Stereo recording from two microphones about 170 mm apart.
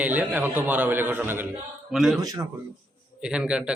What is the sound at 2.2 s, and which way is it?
Speech, 20° right (ahead or behind).